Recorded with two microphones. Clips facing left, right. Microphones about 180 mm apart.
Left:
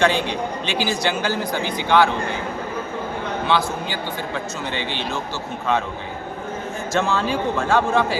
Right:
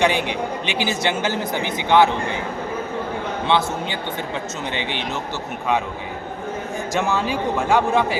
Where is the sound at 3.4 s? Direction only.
20° right (ahead or behind).